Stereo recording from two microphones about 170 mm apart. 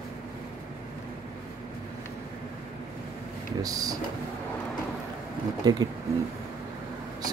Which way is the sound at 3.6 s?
20° right (ahead or behind).